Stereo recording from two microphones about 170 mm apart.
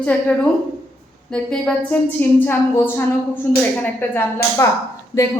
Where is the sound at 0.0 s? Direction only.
10° left (ahead or behind).